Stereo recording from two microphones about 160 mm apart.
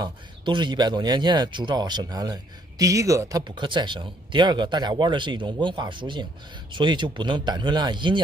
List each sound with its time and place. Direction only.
0.0 s speech: 30° right (ahead or behind)